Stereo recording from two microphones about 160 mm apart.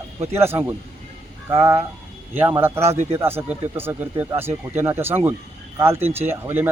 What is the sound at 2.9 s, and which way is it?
Speech, 40° right (ahead or behind).